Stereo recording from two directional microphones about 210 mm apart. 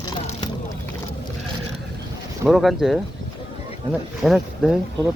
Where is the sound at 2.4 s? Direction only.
Centre (ahead or behind).